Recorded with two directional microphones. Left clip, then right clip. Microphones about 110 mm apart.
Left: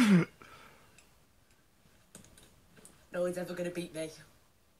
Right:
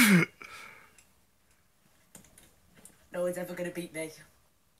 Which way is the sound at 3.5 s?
35° left (ahead or behind).